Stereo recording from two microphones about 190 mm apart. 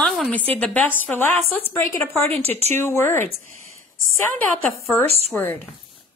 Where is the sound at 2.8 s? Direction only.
10° left (ahead or behind).